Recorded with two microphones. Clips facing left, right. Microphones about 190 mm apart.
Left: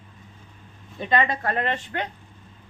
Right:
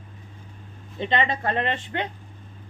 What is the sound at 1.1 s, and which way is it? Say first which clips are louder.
Speech: left 1 dB; 25° right (ahead or behind).